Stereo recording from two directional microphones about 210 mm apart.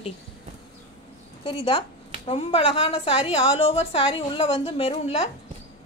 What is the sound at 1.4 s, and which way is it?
A woman's voice, 25° left (ahead or behind).